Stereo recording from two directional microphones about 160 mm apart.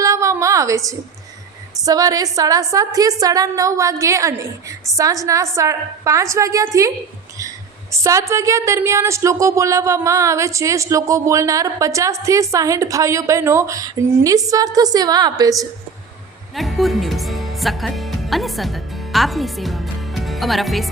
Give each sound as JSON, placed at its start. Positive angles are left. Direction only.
{"t": 0.0, "sound": "a sound", "side_deg": -20}
{"t": 1.8, "sound": "speech", "side_deg": -20}
{"t": 8.0, "sound": "speech", "side_deg": -20}
{"t": 16.6, "sound": "music", "side_deg": 0}